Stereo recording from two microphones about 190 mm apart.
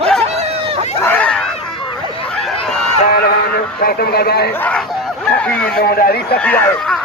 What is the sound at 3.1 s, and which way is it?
Speech, 55° left (ahead or behind).